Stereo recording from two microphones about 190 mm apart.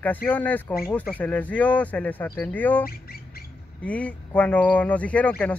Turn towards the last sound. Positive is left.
turn(degrees=5)  # may be behind; listen again after turning